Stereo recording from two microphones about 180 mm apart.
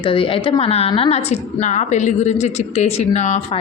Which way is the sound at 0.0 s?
30° left (ahead or behind).